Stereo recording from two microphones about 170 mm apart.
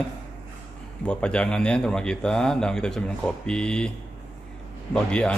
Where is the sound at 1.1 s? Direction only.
5° left (ahead or behind).